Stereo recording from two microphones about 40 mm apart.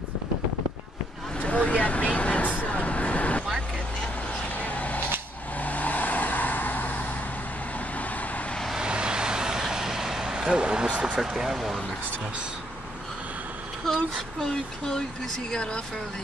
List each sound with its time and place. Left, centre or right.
1.4 s vehicle: left
4.6 s a sound: left
5.6 s vehicle: left
8.7 s vehicle: right
10.5 s speech: right
11.1 s speech: centre
14.4 s speech: centre